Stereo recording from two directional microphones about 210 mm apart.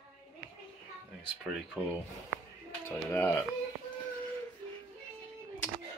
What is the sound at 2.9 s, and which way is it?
Speech, 10° left (ahead or behind).